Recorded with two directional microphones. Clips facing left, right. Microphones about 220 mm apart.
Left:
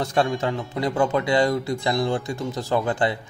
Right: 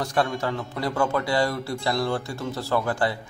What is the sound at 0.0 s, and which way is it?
A man's voice, 25° left (ahead or behind).